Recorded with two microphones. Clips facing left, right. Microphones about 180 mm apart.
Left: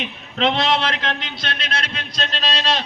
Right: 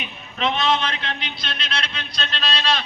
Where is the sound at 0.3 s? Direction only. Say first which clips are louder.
Left 2 dB; 90° left.